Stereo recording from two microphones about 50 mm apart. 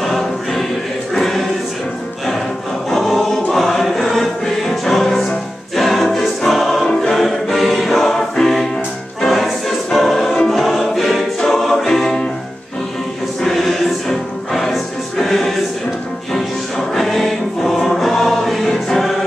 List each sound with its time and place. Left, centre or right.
0.0 s choir: centre
2.9 s choir: centre
3.6 s music: centre
9.2 s choir: centre
10.6 s music: centre
13.4 s music: centre